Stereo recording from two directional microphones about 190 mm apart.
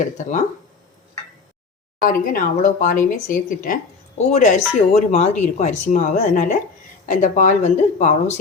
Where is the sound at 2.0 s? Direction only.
45° left (ahead or behind).